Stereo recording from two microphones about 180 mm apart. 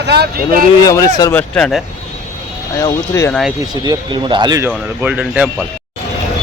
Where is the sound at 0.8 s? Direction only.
20° left (ahead or behind).